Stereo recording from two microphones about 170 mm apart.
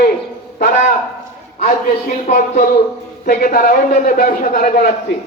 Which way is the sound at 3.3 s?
55° left (ahead or behind).